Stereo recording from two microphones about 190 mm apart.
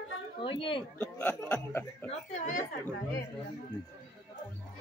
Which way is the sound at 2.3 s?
40° left (ahead or behind).